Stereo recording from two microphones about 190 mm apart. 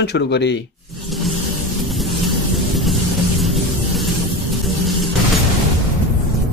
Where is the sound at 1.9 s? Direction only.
Centre (ahead or behind).